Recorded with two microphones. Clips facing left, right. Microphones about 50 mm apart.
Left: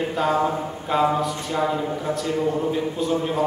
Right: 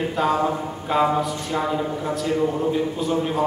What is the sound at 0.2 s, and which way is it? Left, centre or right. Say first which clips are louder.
Speech: even; centre.